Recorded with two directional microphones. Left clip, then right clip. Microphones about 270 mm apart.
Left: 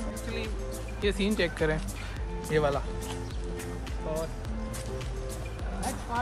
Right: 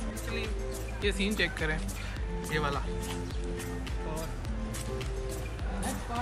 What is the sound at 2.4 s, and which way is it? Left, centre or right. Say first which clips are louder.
Speech: left 5 dB; left.